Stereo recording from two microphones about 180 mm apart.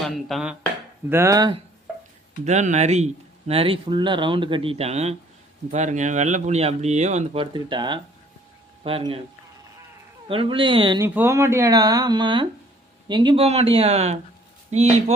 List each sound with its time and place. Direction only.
0.0 s speech: centre (ahead or behind)
1.1 s speech: 15° right (ahead or behind)
2.4 s speech: 40° right (ahead or behind)
7.5 s speech: 25° right (ahead or behind)
10.2 s speech: 30° right (ahead or behind)
11.0 s speech: 10° right (ahead or behind); by 15.1 s 40° right (ahead or behind)